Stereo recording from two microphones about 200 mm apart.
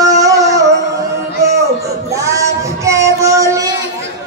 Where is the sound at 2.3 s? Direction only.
15° right (ahead or behind).